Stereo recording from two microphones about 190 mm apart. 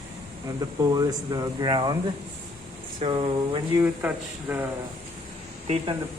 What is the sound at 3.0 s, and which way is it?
Speech, 30° right (ahead or behind).